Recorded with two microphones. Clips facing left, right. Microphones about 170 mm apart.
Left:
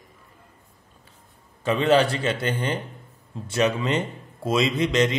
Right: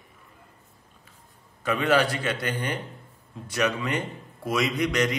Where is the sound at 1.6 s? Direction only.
25° left (ahead or behind).